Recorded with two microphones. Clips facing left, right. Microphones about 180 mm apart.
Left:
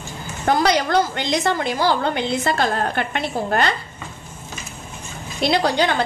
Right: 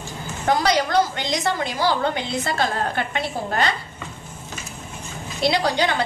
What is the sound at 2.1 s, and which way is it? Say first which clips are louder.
A woman's voice: left 3 dB; 60° left (ahead or behind).